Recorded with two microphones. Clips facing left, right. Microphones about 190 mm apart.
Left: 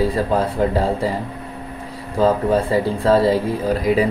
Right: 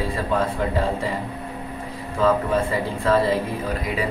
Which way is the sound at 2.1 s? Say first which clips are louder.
Left 4 dB; 35° left (ahead or behind).